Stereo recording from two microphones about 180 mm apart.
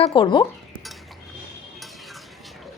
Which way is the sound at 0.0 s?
30° left (ahead or behind).